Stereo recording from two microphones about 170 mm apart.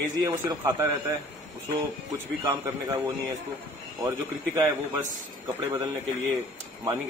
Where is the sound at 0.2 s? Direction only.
15° right (ahead or behind).